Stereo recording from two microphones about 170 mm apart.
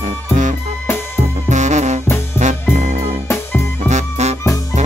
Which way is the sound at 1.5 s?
45° right (ahead or behind).